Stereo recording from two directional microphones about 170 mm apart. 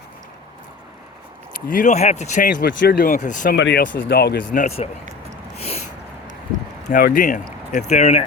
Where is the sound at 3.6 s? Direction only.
90° left.